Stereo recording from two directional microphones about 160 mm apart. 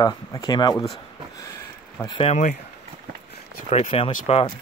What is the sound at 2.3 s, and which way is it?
Speech, 55° left (ahead or behind).